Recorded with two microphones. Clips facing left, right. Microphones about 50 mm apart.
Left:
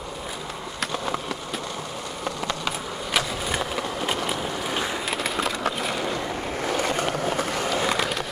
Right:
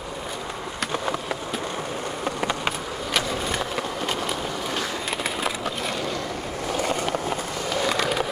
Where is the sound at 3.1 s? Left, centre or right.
Centre.